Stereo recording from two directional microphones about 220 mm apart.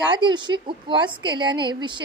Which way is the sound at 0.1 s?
20° right (ahead or behind).